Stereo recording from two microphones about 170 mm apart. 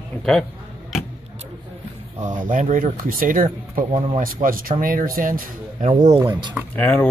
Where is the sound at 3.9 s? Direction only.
30° right (ahead or behind).